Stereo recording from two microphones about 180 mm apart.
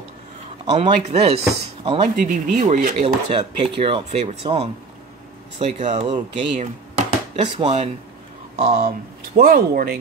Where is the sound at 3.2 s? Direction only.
30° right (ahead or behind).